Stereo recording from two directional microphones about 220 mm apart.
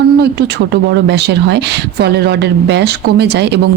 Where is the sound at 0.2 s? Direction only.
50° right (ahead or behind).